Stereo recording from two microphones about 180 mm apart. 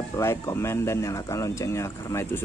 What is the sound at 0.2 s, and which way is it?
Speech, 15° left (ahead or behind).